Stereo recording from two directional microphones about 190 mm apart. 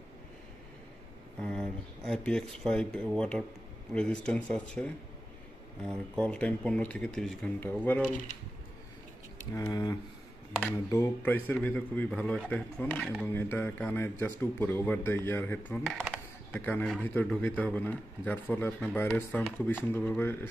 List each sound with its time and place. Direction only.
1.4 s speech: 5° left (ahead or behind)
9.7 s a man's voice: 20° left (ahead or behind)